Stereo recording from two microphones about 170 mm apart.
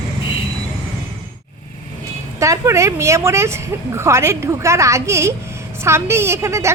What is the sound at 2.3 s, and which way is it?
A woman's voice, 20° right (ahead or behind).